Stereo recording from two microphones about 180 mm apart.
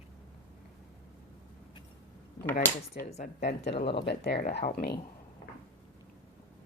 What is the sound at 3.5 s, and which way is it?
Speech, 65° left (ahead or behind).